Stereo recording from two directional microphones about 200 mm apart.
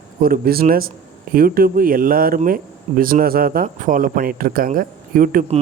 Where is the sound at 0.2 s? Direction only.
45° right (ahead or behind).